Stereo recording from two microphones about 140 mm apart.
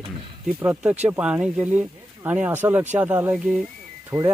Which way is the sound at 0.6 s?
10° right (ahead or behind).